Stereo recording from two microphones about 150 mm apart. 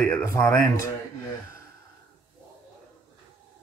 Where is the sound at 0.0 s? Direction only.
20° left (ahead or behind).